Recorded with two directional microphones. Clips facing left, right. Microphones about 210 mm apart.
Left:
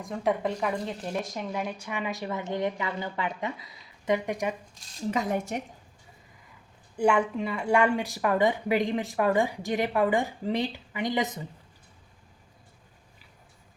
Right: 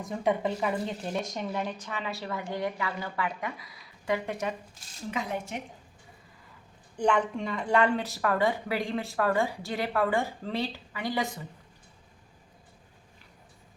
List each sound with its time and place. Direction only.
0.0 s speech: centre (ahead or behind)
5.1 s a woman's voice: 45° left (ahead or behind)
6.9 s speech: 10° left (ahead or behind)